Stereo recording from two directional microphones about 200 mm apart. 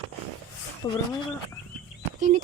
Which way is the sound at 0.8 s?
15° left (ahead or behind).